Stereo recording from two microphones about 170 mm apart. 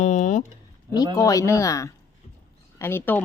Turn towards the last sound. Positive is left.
turn(degrees=10)  # may be behind; listen again after turning